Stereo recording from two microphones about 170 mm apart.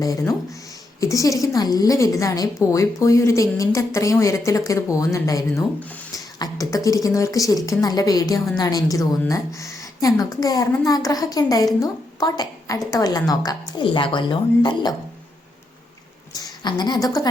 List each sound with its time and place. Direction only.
0.0 s a woman's voice: 20° left (ahead or behind)
6.1 s a woman's voice: 20° left (ahead or behind)
16.3 s a woman's voice: 25° left (ahead or behind)